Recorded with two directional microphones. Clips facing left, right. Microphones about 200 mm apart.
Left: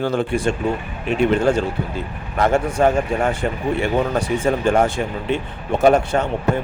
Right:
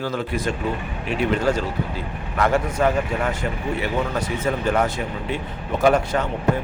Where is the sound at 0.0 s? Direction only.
25° left (ahead or behind).